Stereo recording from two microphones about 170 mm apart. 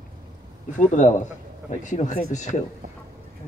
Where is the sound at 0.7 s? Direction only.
50° left (ahead or behind).